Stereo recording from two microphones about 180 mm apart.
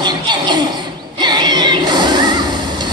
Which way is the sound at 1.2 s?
25° right (ahead or behind).